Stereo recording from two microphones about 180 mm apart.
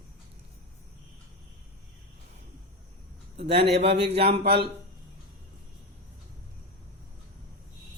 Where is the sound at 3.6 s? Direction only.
65° right (ahead or behind).